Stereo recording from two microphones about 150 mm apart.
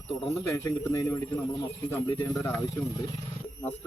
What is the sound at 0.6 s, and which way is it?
Speech, 20° left (ahead or behind).